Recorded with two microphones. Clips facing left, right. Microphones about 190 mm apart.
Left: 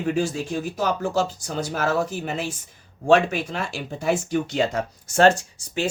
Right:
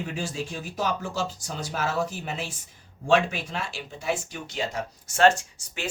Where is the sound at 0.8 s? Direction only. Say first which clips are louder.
Left 4 dB; 45° left (ahead or behind).